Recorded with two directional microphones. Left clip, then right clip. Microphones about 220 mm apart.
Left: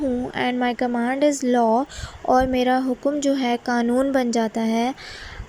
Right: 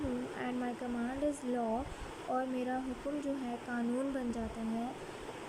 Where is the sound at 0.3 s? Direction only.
35° left (ahead or behind).